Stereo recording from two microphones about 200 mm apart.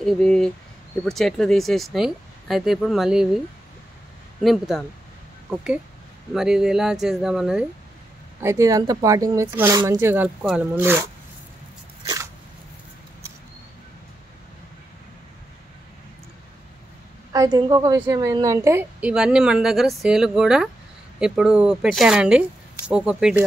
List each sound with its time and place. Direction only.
0.0 s speech: centre (ahead or behind)
8.4 s a woman's voice: 15° right (ahead or behind)
12.0 s a sound: 15° right (ahead or behind)
17.3 s a woman's voice: 20° right (ahead or behind); by 23.3 s 5° right (ahead or behind)